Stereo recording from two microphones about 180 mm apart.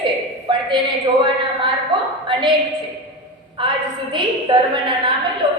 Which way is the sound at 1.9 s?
25° right (ahead or behind).